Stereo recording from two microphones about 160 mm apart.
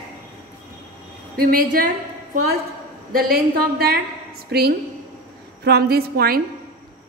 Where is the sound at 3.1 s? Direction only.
70° right (ahead or behind).